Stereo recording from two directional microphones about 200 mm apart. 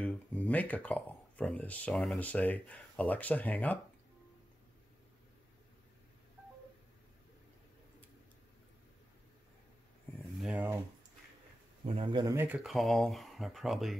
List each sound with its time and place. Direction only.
0.0 s speech: 5° left (ahead or behind)
10.1 s a sound: 10° left (ahead or behind)
10.4 s speech: 5° right (ahead or behind)
11.8 s a man's voice: 25° right (ahead or behind)
12.4 s speech: 5° right (ahead or behind)